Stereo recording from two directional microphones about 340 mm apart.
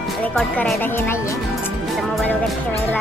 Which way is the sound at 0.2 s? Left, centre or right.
Centre.